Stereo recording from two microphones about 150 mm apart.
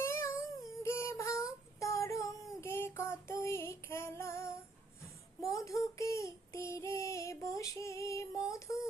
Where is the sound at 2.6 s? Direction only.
15° left (ahead or behind).